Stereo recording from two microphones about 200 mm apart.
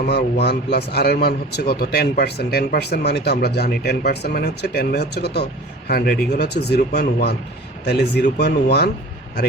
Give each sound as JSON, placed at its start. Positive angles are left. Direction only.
{"t": 0.1, "sound": "a man's voice", "side_deg": 55}